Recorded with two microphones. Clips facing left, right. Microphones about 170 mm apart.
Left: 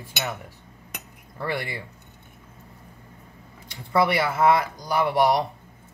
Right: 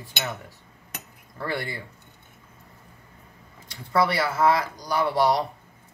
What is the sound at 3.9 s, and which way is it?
Cutlery, 15° left (ahead or behind).